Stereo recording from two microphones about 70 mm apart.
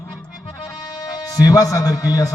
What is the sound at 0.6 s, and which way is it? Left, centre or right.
Music, left.